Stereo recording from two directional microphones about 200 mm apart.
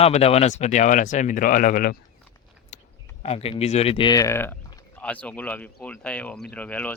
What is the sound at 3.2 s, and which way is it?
Speech, 30° left (ahead or behind).